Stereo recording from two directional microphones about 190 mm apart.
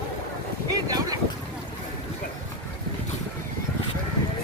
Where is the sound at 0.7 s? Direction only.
20° right (ahead or behind).